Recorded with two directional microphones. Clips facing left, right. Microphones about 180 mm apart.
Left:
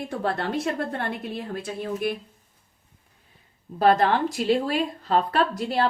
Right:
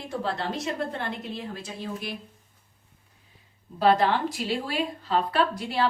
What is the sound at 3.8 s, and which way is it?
Speech, 50° left (ahead or behind).